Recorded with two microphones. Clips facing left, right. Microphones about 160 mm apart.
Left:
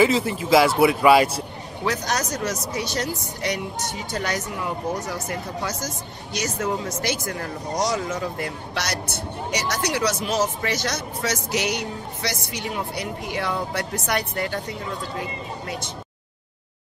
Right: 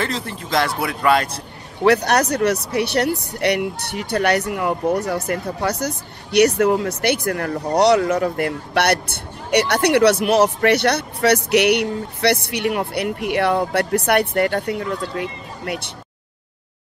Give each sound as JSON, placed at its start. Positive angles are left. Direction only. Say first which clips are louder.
{"t": 0.0, "sound": "speech", "louder": "left 6 dB", "side_deg": 5}
{"t": 1.9, "sound": "speech", "louder": "right 9 dB", "side_deg": -65}